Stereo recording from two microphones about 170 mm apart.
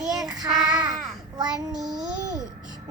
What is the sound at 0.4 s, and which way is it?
Child singing, centre (ahead or behind).